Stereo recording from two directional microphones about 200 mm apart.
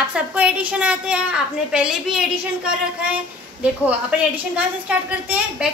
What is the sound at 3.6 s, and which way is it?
A woman's voice, 5° right (ahead or behind).